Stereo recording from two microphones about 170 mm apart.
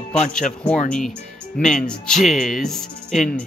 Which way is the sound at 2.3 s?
50° left (ahead or behind).